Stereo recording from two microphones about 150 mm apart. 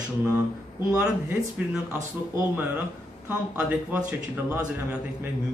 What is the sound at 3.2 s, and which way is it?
A man's voice, 15° right (ahead or behind).